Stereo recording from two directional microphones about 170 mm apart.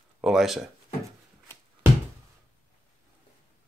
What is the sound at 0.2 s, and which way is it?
Speech, centre (ahead or behind).